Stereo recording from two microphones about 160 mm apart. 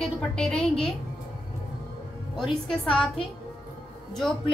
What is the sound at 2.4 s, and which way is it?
A woman's voice, centre (ahead or behind).